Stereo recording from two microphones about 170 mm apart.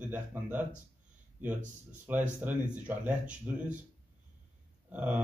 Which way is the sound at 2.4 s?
10° right (ahead or behind).